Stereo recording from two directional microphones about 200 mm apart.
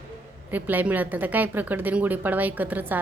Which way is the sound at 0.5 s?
10° right (ahead or behind).